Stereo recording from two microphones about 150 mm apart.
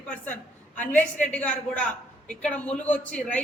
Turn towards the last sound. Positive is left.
turn(degrees=10)  # may be behind; listen again after turning